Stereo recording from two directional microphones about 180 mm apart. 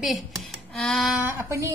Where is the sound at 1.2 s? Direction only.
15° right (ahead or behind).